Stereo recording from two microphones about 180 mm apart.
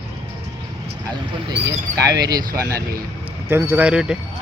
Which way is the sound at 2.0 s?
20° right (ahead or behind).